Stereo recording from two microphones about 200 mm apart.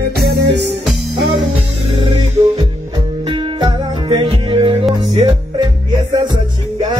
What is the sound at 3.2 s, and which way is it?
Music, 25° right (ahead or behind).